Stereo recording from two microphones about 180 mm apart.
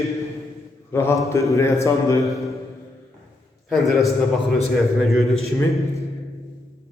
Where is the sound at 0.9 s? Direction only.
15° left (ahead or behind).